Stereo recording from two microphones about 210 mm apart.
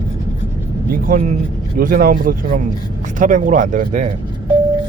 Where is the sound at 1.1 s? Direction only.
35° right (ahead or behind).